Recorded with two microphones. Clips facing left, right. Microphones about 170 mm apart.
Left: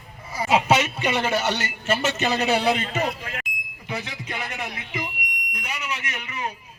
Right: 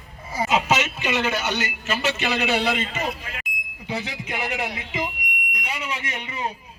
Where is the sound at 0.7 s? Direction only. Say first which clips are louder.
Left 2 dB; 30° left (ahead or behind).